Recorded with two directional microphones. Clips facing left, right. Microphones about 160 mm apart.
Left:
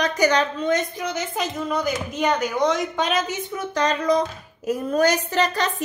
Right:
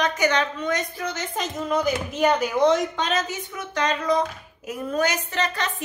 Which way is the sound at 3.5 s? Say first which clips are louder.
Left 2 dB; 40° left (ahead or behind).